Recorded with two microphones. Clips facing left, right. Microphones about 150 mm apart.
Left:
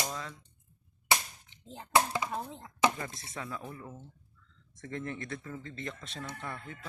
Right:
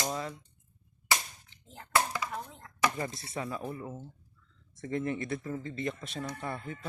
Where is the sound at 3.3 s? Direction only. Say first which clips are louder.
Right 4 dB; 15° right (ahead or behind).